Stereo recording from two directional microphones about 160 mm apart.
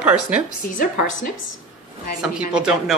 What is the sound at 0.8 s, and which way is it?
Speech, 55° left (ahead or behind).